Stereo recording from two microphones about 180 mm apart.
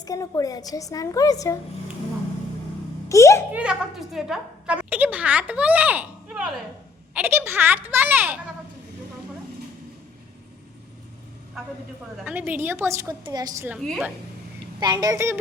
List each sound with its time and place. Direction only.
0.0 s a woman's voice: 20° left (ahead or behind)
3.1 s a sound: 15° left (ahead or behind)
3.5 s a woman's voice: 5° right (ahead or behind)
12.2 s a woman's voice: 10° right (ahead or behind)
13.8 s a woman's voice: centre (ahead or behind)
14.8 s a woman's voice: 20° right (ahead or behind)